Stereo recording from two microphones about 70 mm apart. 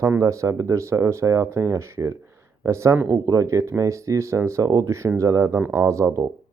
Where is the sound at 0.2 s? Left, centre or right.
Right.